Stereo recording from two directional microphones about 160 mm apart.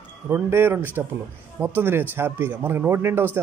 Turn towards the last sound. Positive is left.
turn(degrees=-15)  # may be behind; listen again after turning